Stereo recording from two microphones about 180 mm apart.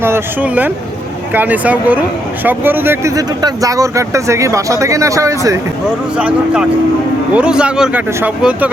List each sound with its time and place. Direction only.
0.0 s speech: 10° right (ahead or behind)
6.1 s speech: 5° right (ahead or behind)